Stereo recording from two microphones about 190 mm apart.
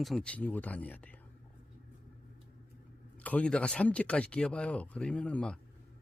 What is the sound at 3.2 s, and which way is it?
Speech, 5° left (ahead or behind).